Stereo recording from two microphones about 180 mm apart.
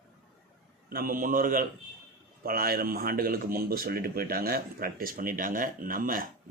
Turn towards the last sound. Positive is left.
turn(degrees=-50)  # may be behind; listen again after turning